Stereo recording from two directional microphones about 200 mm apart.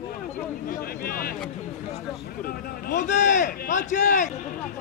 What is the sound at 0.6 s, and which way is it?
Speech, 45° left (ahead or behind).